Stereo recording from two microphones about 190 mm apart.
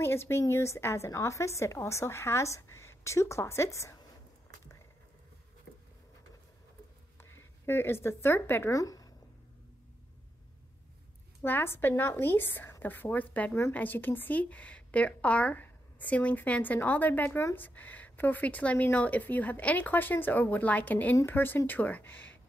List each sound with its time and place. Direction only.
0.0 s a woman's voice: 15° left (ahead or behind)
7.2 s speech: 10° left (ahead or behind)
11.4 s a woman's voice: 10° left (ahead or behind)